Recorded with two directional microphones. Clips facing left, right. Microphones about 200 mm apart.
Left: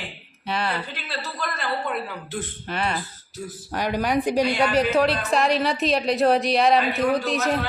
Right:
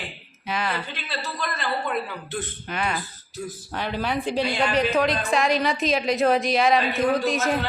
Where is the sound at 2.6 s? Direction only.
35° left (ahead or behind).